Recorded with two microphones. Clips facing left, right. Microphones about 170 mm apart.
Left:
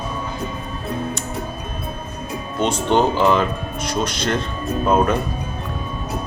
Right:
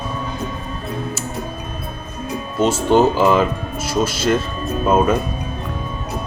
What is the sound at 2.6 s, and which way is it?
Speech, 5° right (ahead or behind).